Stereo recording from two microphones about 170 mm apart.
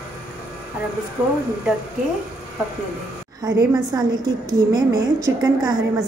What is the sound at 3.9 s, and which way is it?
A woman's voice, 25° right (ahead or behind).